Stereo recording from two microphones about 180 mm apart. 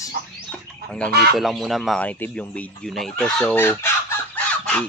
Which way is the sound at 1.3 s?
Centre (ahead or behind).